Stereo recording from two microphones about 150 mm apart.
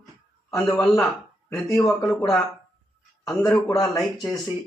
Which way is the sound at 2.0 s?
Centre (ahead or behind).